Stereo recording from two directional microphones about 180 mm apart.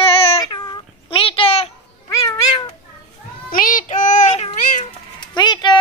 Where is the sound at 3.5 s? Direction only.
50° left (ahead or behind).